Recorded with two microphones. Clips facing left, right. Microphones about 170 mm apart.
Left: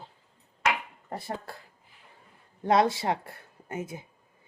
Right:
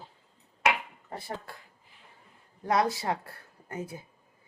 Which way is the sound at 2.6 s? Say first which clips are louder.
Left 3 dB; 25° left (ahead or behind).